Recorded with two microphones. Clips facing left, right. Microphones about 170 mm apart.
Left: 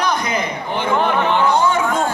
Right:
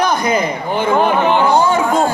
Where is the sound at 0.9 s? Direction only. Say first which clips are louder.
Right 3 dB; 30° right (ahead or behind).